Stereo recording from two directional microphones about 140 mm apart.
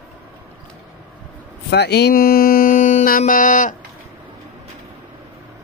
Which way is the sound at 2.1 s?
90° left.